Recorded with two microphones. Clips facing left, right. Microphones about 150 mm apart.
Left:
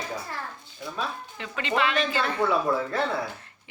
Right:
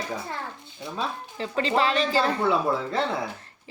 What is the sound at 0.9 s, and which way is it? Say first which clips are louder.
Speech: right 3 dB; 35° right (ahead or behind).